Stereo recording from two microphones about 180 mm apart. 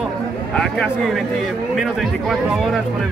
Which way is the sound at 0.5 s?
Centre (ahead or behind).